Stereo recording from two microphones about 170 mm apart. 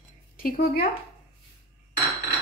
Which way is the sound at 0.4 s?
65° left (ahead or behind).